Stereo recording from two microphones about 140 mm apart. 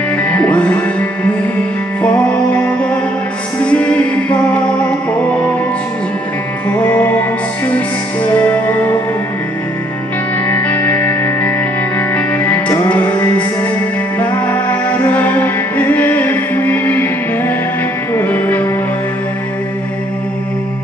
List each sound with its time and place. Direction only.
0.3 s music: 10° left (ahead or behind)
3.6 s music: 10° left (ahead or behind)
7.7 s music: 10° left (ahead or behind)
10.5 s music: 15° left (ahead or behind)